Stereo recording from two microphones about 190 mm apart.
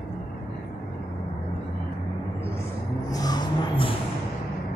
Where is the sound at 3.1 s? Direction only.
20° left (ahead or behind).